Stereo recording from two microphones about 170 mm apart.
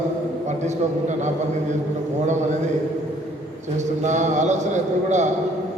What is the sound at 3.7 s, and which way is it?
Speech, 45° right (ahead or behind).